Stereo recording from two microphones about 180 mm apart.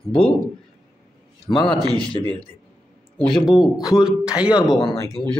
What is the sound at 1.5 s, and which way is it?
Speech, 25° left (ahead or behind).